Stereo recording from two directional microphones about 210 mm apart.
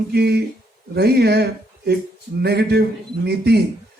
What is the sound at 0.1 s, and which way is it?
Speech, 50° right (ahead or behind).